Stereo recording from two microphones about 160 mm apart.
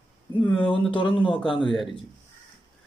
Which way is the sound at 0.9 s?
30° left (ahead or behind).